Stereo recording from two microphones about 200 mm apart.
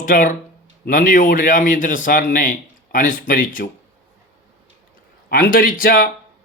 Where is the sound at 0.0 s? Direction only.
40° left (ahead or behind).